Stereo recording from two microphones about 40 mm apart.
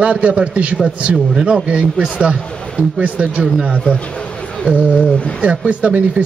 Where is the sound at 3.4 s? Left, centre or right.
Right.